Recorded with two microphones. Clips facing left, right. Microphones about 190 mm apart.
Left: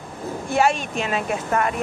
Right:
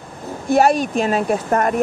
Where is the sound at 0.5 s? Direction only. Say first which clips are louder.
Right 6 dB; 40° right (ahead or behind).